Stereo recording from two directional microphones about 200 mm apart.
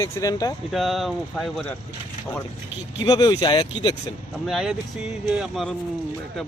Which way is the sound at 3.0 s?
20° left (ahead or behind).